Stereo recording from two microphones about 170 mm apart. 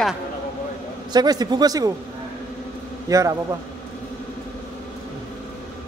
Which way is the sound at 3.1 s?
20° right (ahead or behind).